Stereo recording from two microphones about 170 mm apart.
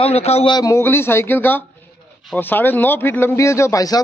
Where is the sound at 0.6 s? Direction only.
15° left (ahead or behind).